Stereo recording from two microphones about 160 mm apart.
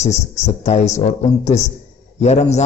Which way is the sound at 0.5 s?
45° left (ahead or behind).